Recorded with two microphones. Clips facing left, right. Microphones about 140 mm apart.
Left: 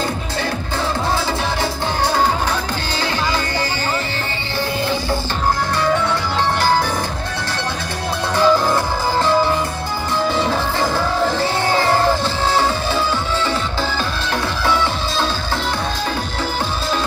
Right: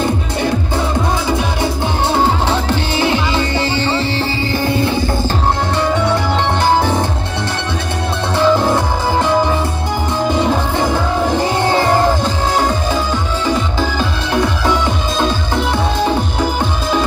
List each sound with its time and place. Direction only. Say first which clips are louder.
2.1 s music: right 3 dB; 25° right (ahead or behind)
6.6 s music: right 5 dB; 20° right (ahead or behind)
8.4 s music: right 2 dB; 20° right (ahead or behind)
10.3 s music: right 4 dB; 15° right (ahead or behind)
13.5 s music: right 4 dB; 15° right (ahead or behind)